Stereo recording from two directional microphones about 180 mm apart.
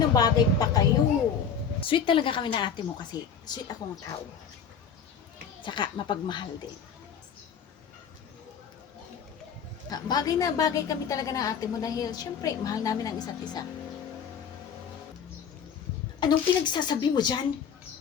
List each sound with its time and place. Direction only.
0.1 s a woman's voice: 20° left (ahead or behind)
5.6 s a woman's voice: 25° left (ahead or behind)
9.9 s a woman's voice: 20° left (ahead or behind)
16.2 s a woman's voice: 25° left (ahead or behind)